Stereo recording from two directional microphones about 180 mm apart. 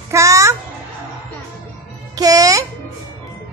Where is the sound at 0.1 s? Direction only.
15° right (ahead or behind).